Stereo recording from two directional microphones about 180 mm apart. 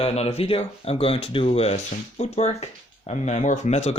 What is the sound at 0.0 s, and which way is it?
Speech, 35° left (ahead or behind).